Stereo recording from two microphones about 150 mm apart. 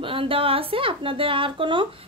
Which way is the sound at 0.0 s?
35° right (ahead or behind).